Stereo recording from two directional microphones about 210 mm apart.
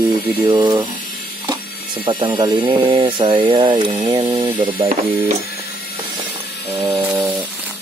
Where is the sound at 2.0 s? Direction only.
25° right (ahead or behind).